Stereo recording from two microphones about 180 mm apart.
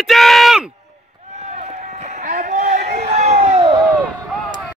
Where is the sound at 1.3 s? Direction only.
40° right (ahead or behind).